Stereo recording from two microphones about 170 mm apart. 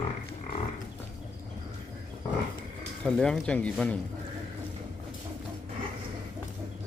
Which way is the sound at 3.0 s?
5° left (ahead or behind).